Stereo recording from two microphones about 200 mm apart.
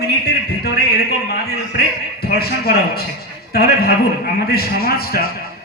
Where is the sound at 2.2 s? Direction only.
50° left (ahead or behind).